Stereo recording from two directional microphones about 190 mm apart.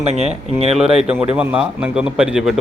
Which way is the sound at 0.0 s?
35° right (ahead or behind).